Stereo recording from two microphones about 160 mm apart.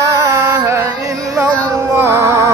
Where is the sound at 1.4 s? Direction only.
20° right (ahead or behind).